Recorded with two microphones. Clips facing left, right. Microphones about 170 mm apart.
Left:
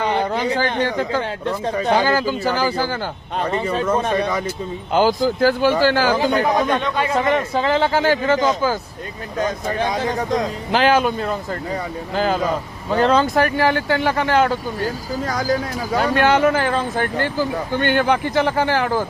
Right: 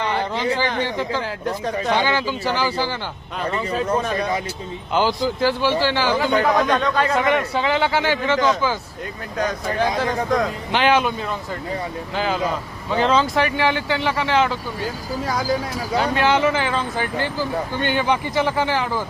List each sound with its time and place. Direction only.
0.8 s speech: 50° left (ahead or behind)
1.5 s speech: 30° left (ahead or behind); by 3.0 s 45° left (ahead or behind)
3.3 s a man's voice: 30° left (ahead or behind)
4.9 s speech: 45° left (ahead or behind)
6.4 s a man's voice: 20° left (ahead or behind)
7.2 s speech: 35° left (ahead or behind)
10.0 s a man's voice: 20° left (ahead or behind)
10.7 s a man's voice: 40° left (ahead or behind)